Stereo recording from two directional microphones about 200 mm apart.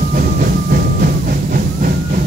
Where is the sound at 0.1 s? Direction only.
45° right (ahead or behind).